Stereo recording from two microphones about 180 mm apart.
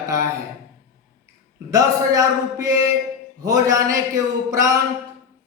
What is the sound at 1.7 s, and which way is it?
Speech, 20° right (ahead or behind).